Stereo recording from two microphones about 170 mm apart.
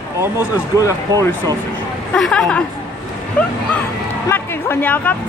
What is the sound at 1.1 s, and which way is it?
Speech, 20° right (ahead or behind).